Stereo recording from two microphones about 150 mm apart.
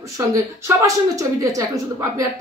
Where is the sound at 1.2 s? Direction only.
20° right (ahead or behind).